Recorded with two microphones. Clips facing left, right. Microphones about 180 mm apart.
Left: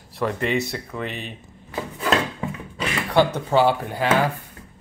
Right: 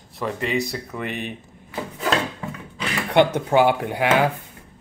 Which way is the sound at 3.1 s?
15° right (ahead or behind).